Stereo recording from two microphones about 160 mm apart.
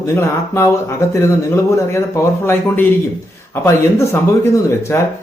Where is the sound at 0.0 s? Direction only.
20° left (ahead or behind).